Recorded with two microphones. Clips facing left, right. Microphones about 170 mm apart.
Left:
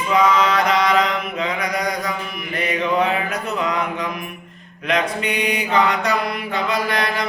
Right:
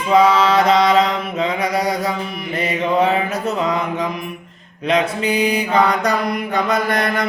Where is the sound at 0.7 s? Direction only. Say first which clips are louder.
Right 4 dB; 30° right (ahead or behind).